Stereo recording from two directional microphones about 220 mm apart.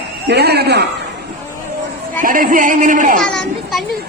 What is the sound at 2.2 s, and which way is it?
Speech, 40° right (ahead or behind).